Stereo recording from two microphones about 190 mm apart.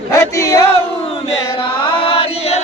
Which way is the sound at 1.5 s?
25° left (ahead or behind).